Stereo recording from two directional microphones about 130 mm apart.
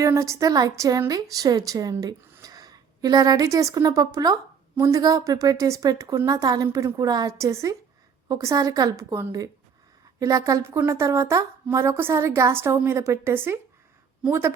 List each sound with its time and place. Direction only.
0.0 s a woman's voice: 25° right (ahead or behind)